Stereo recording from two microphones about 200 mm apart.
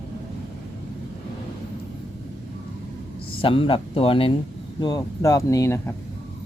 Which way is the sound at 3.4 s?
25° left (ahead or behind).